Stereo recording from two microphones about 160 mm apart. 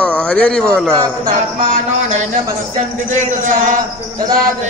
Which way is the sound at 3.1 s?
50° right (ahead or behind).